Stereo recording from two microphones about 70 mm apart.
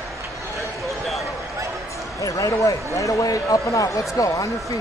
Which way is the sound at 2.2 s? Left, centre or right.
Left.